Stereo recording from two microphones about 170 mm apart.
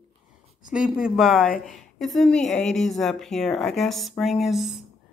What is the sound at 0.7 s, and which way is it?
Speech, 5° right (ahead or behind).